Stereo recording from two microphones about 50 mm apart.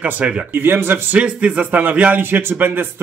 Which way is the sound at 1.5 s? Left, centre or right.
Right.